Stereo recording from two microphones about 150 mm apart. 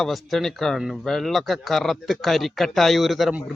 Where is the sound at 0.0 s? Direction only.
Centre (ahead or behind).